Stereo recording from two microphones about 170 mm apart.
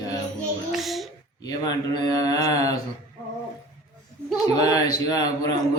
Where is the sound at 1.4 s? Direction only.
20° left (ahead or behind).